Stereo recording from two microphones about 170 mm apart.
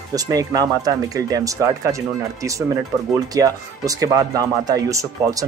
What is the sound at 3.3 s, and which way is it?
Speech, 20° right (ahead or behind).